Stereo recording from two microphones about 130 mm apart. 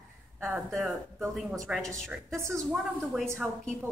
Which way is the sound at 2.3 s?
20° right (ahead or behind).